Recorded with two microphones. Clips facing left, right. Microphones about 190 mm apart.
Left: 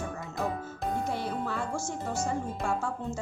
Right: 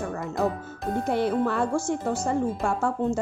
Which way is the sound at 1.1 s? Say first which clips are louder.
Right 9 dB; 65° right (ahead or behind).